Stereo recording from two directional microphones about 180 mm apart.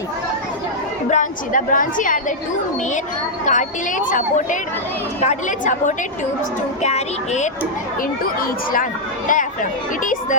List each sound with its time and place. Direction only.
1.1 s a woman's voice: 45° left (ahead or behind)
3.4 s a woman's voice: 45° left (ahead or behind)
8.4 s speech: 50° left (ahead or behind)